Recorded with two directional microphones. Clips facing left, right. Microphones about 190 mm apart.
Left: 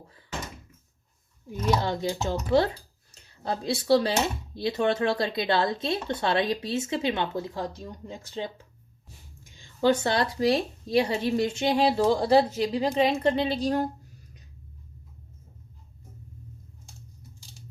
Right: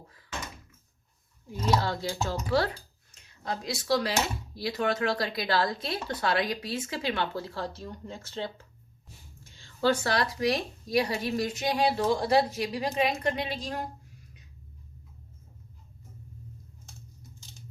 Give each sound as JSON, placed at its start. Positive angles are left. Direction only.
{"t": 1.6, "sound": "speech", "side_deg": 20}
{"t": 3.1, "sound": "speech", "side_deg": 35}